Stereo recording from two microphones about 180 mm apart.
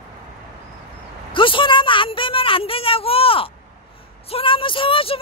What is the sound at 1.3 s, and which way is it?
A woman's voice, 30° left (ahead or behind).